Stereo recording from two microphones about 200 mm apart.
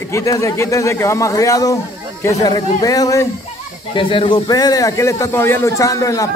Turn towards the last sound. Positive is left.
turn(degrees=15)  # may be behind; listen again after turning